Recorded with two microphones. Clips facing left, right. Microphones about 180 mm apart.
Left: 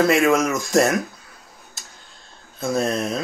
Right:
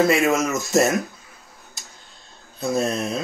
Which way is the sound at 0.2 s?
25° right (ahead or behind).